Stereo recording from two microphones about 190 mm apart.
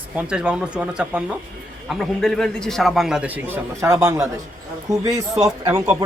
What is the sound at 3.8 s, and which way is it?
Speech, 15° right (ahead or behind).